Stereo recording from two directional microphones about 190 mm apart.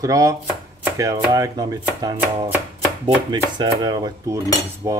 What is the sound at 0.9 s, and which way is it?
Chopping, 20° right (ahead or behind).